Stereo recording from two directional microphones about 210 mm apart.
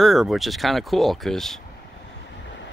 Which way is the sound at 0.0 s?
Centre (ahead or behind).